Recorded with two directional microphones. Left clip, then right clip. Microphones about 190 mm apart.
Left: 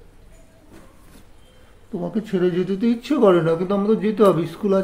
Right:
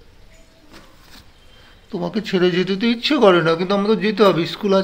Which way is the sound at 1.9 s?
5° left (ahead or behind).